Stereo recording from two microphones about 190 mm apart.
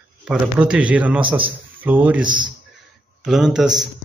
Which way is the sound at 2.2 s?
25° right (ahead or behind).